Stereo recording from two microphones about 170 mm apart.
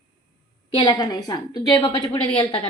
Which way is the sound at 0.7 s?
25° left (ahead or behind).